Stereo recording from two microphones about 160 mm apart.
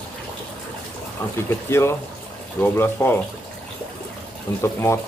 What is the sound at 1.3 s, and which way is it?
Speech, 15° left (ahead or behind).